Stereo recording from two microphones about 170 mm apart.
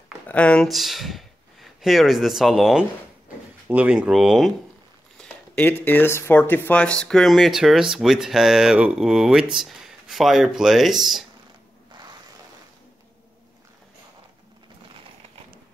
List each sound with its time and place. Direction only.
0.3 s speech: 5° left (ahead or behind)
5.1 s a sound: 5° left (ahead or behind)
5.9 s speech: 10° left (ahead or behind)